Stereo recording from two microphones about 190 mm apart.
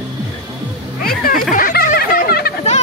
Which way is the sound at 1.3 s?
45° left (ahead or behind).